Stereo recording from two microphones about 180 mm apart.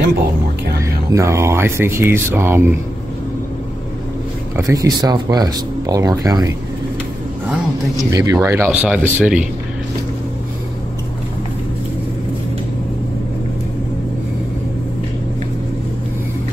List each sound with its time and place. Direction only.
1.1 s speech: 15° right (ahead or behind)
4.6 s speech: 20° right (ahead or behind)
8.1 s speech: 15° right (ahead or behind)